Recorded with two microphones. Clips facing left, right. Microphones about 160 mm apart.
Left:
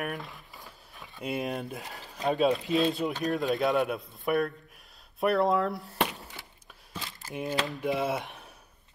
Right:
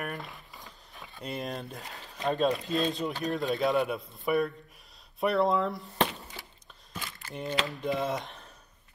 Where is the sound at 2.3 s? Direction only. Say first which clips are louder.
Left 2 dB; 5° left (ahead or behind).